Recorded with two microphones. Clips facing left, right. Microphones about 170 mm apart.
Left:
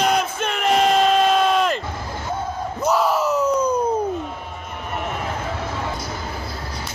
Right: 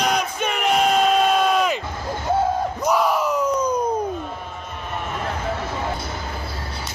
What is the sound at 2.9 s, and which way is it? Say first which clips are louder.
Crowd: left 1 dB; 5° left (ahead or behind).